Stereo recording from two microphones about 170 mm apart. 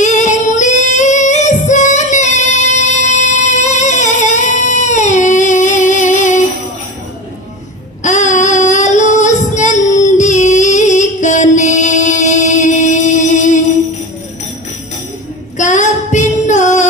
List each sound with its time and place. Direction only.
0.0 s singing: 45° left (ahead or behind)
8.0 s child singing: 45° left (ahead or behind)
15.5 s child singing: 45° left (ahead or behind)